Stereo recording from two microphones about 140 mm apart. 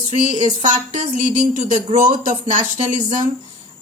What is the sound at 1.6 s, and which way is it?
Speech, 55° right (ahead or behind).